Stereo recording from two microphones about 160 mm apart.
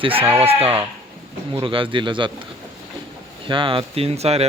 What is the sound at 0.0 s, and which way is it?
Speech, 35° right (ahead or behind).